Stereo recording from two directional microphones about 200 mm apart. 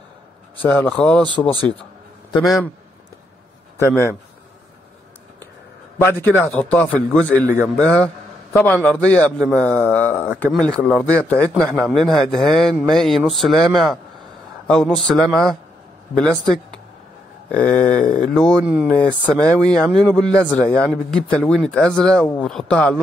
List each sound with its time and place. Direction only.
0.6 s a man's voice: 10° left (ahead or behind)
3.7 s a man's voice: 15° left (ahead or behind)
5.9 s a man's voice: 10° left (ahead or behind)
7.4 s speech: 15° right (ahead or behind)
7.8 s a man's voice: 5° left (ahead or behind)
17.9 s speech: 40° left (ahead or behind)
18.2 s a man's voice: 5° left (ahead or behind)
19.3 s a man's voice: 5° left (ahead or behind)